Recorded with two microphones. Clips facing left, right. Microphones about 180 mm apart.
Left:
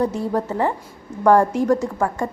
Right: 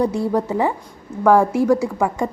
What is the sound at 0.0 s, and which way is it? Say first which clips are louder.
A woman's voice: right 2 dB; 10° right (ahead or behind).